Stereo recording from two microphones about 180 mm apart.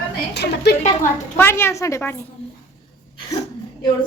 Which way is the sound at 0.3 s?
65° left (ahead or behind).